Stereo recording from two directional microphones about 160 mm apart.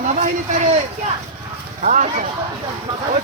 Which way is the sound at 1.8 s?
50° right (ahead or behind).